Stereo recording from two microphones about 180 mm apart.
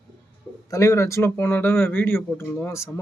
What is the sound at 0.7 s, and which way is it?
Speech, 15° left (ahead or behind).